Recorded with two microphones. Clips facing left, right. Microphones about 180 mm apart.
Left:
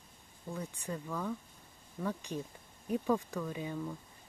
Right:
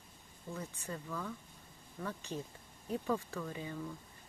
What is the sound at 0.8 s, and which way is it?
Speech, 10° left (ahead or behind).